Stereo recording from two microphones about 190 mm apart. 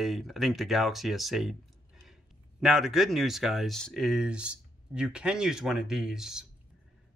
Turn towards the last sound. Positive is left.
turn(degrees=-5)  # may be behind; listen again after turning